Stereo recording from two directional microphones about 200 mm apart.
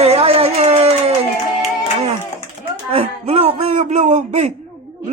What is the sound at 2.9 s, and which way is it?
Music, 30° right (ahead or behind).